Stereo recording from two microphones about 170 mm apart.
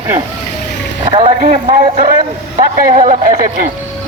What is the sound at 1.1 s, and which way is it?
A man's voice, 35° right (ahead or behind).